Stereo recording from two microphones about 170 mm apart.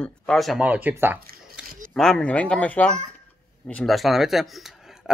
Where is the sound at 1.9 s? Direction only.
Centre (ahead or behind).